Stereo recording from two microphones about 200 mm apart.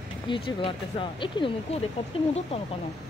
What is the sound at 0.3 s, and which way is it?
Speech, 25° left (ahead or behind).